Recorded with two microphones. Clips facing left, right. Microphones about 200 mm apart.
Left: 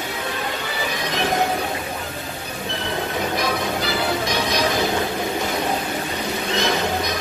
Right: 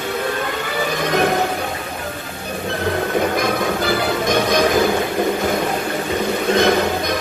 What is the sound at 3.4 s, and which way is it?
Music, 50° right (ahead or behind).